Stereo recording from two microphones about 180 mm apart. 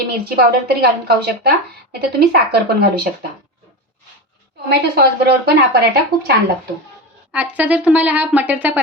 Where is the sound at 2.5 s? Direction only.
60° right (ahead or behind).